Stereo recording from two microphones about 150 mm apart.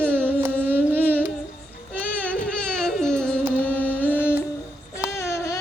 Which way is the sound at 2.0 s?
10° left (ahead or behind).